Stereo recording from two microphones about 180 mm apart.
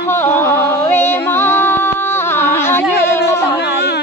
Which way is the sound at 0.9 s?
10° left (ahead or behind).